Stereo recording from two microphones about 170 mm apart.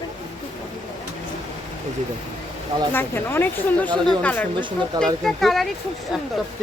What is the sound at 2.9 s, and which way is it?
Speech, 10° left (ahead or behind).